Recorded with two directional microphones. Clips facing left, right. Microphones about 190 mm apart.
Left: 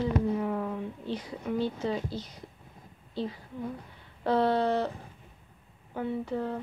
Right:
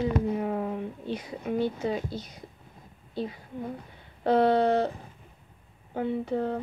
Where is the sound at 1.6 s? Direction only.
15° right (ahead or behind).